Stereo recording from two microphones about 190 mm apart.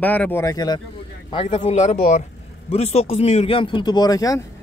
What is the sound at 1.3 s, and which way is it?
A man's voice, 30° left (ahead or behind).